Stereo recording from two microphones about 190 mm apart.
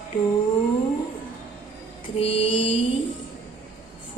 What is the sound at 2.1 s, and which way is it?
Mantra, 30° left (ahead or behind).